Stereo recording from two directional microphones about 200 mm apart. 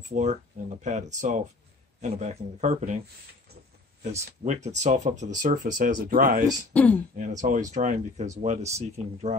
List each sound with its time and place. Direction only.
0.1 s speech: 35° right (ahead or behind)
4.0 s speech: 35° right (ahead or behind)
6.7 s speech: 10° left (ahead or behind)
7.2 s speech: 40° right (ahead or behind)